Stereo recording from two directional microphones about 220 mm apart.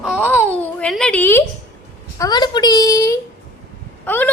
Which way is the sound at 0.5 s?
5° left (ahead or behind).